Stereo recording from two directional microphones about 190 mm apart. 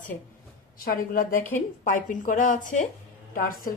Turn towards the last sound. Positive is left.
turn(degrees=50)  # may be behind; listen again after turning